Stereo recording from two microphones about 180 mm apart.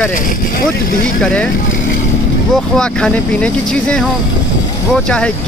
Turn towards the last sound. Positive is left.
turn(degrees=5)  # may be behind; listen again after turning